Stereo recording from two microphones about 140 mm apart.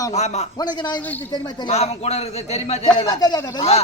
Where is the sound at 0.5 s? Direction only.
30° left (ahead or behind).